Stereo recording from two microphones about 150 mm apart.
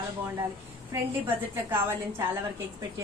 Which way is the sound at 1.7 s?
15° right (ahead or behind).